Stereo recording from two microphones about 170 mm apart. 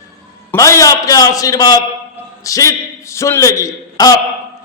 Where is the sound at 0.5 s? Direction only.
20° left (ahead or behind).